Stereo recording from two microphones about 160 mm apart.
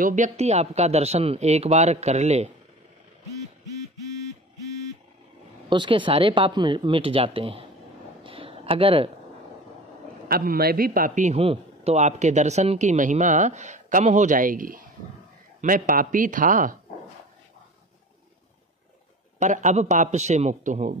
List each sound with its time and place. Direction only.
0.0 s a man's voice: 50° right (ahead or behind)
5.7 s speech: 30° right (ahead or behind)
8.2 s a sound: 35° right (ahead or behind)
10.2 s a man's voice: 65° right (ahead or behind)
19.4 s a man's voice: 50° right (ahead or behind)